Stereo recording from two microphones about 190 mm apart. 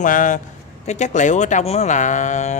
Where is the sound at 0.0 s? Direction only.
45° left (ahead or behind).